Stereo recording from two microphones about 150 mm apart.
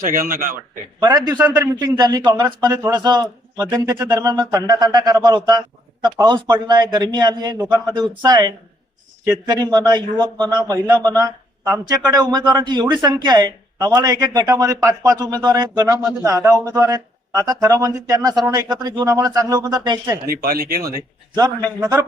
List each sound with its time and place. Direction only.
0.0 s a man's voice: 70° right (ahead or behind)
0.9 s speech: 25° right (ahead or behind)
20.2 s speech: 85° right
20.8 s speech: 25° right (ahead or behind)